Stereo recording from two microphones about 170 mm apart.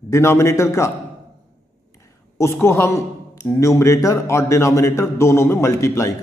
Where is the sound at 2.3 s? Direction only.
15° left (ahead or behind).